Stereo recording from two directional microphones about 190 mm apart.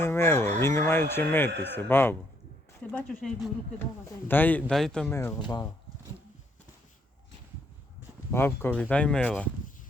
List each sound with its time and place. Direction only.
0.0 s speech: 10° left (ahead or behind)
5.4 s speech: 20° left (ahead or behind)
8.3 s speech: 10° left (ahead or behind)